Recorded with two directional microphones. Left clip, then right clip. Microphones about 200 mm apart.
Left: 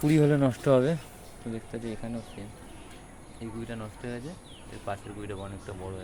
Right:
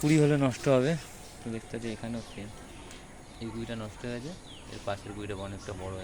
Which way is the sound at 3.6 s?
15° right (ahead or behind).